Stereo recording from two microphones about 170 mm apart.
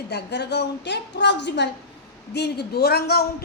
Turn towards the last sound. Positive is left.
turn(degrees=70)  # may be behind; listen again after turning